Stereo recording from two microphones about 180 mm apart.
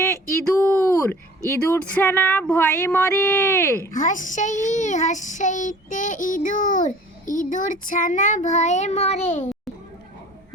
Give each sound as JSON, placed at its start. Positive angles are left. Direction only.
{"t": 0.6, "sound": "a sound", "side_deg": 10}
{"t": 1.5, "sound": "speech", "side_deg": 10}
{"t": 3.9, "sound": "a child's voice", "side_deg": 45}